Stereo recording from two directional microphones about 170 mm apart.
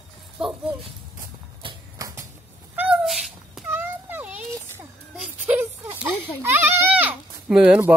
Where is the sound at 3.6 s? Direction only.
10° right (ahead or behind).